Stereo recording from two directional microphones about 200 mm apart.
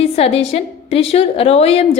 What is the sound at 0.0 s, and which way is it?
A woman's voice, 30° left (ahead or behind).